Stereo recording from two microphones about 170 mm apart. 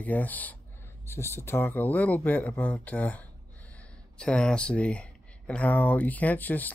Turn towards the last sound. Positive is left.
turn(degrees=10)  # may be behind; listen again after turning